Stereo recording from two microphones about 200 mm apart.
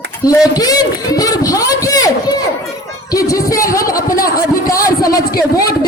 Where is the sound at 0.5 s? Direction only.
20° left (ahead or behind).